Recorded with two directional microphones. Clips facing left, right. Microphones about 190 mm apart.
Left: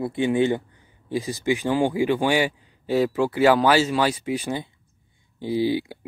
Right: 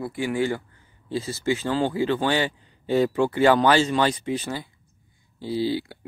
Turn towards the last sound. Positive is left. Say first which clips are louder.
# left 3 dB
turn(degrees=15)  # may be behind; listen again after turning